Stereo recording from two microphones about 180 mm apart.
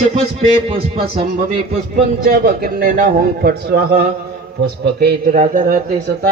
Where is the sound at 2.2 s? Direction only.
55° right (ahead or behind).